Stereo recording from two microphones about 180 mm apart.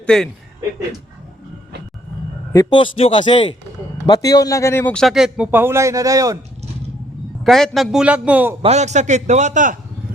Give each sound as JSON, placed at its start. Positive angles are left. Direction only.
{"t": 0.0, "sound": "speech", "side_deg": 5}
{"t": 2.5, "sound": "a man's voice", "side_deg": 20}
{"t": 7.4, "sound": "speech", "side_deg": 0}
{"t": 8.6, "sound": "a man's voice", "side_deg": -40}